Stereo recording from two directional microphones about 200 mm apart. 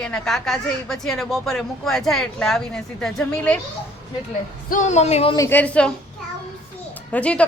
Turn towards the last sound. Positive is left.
turn(degrees=5)  # may be behind; listen again after turning